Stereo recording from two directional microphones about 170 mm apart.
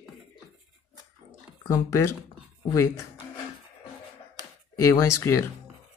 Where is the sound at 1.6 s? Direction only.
20° left (ahead or behind).